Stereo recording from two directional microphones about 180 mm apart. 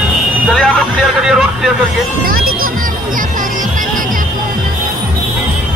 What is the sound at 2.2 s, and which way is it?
Speech, 55° right (ahead or behind).